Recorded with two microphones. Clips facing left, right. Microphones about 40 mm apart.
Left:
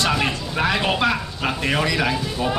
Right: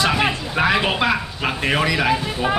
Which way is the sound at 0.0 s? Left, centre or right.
Centre.